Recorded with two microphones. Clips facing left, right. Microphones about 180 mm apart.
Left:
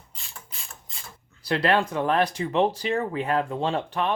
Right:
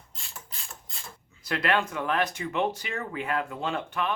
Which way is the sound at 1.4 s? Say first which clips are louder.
Left 4 dB; 35° left (ahead or behind).